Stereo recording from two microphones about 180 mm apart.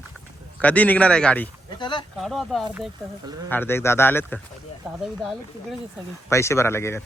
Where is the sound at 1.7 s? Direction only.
25° left (ahead or behind).